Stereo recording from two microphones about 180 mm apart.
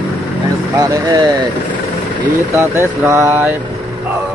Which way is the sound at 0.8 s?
20° right (ahead or behind).